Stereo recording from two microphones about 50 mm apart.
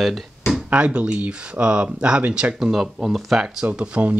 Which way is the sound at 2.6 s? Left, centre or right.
Centre.